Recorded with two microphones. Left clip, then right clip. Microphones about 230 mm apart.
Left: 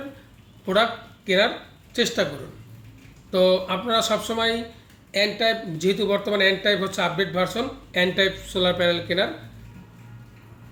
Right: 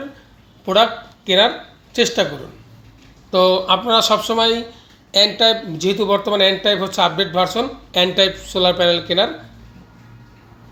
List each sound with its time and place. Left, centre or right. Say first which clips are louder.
0.6 s a man's voice: right 6 dB; centre
1.9 s speech: right 6 dB; centre
3.3 s speech: right 6 dB; centre